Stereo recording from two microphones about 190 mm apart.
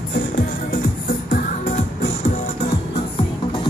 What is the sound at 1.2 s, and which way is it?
Music, 45° left (ahead or behind).